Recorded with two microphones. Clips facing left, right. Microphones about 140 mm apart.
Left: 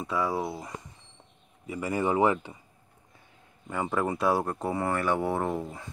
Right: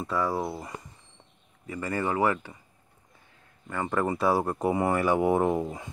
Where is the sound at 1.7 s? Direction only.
10° left (ahead or behind).